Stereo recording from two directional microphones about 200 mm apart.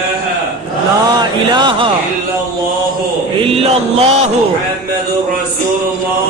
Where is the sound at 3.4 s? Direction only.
30° right (ahead or behind).